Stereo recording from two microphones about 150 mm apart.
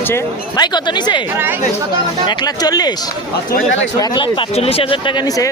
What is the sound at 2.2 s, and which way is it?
Speech, 25° left (ahead or behind).